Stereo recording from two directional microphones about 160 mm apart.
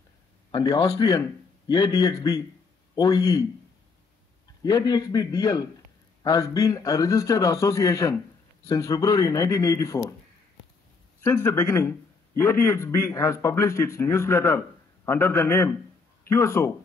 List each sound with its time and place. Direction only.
0.5 s a man's voice: 25° left (ahead or behind)
4.6 s a man's voice: 25° left (ahead or behind)
11.2 s a man's voice: 20° left (ahead or behind)